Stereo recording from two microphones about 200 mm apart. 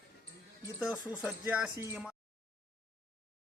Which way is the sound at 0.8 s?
5° right (ahead or behind).